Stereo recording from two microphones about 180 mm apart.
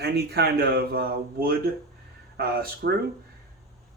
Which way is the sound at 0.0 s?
65° right (ahead or behind).